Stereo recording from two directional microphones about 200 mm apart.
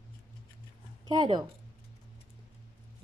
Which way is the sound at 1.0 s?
20° right (ahead or behind).